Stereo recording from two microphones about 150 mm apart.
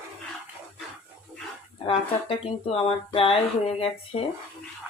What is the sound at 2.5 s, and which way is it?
Speech, 40° left (ahead or behind).